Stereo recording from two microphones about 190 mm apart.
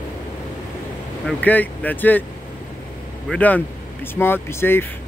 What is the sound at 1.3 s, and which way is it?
Speech, 10° left (ahead or behind).